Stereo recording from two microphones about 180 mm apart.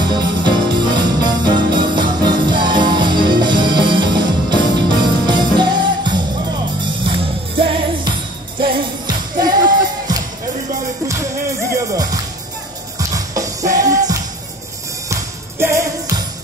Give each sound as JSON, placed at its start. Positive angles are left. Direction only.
{"t": 0.2, "sound": "music", "side_deg": -25}
{"t": 8.5, "sound": "jingle bell", "side_deg": -30}
{"t": 11.7, "sound": "music", "side_deg": -20}
{"t": 15.6, "sound": "music", "side_deg": -15}